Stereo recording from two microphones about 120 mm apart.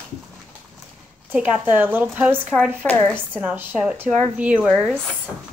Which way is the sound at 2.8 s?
10° left (ahead or behind).